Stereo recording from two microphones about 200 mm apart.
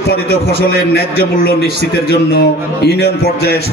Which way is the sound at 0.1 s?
55° left (ahead or behind).